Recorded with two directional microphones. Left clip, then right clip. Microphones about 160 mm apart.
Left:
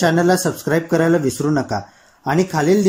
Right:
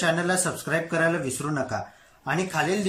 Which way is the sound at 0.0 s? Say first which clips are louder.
Left 8 dB; 40° left (ahead or behind).